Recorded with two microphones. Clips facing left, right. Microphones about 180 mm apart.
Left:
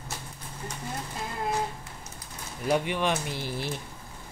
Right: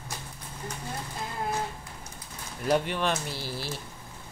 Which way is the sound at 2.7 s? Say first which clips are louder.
Even; 10° left (ahead or behind).